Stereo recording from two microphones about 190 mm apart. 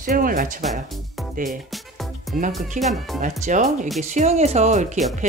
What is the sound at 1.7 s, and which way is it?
Music, centre (ahead or behind).